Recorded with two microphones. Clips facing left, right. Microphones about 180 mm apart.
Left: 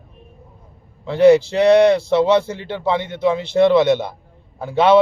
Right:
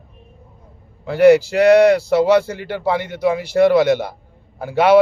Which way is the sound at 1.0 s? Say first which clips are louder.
Even; 25° left (ahead or behind).